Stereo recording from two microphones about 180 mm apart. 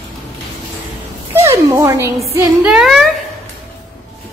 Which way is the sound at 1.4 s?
15° right (ahead or behind).